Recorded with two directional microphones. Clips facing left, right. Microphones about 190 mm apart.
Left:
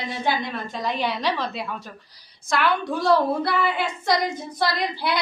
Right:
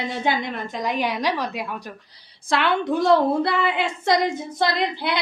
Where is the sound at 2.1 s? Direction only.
30° right (ahead or behind).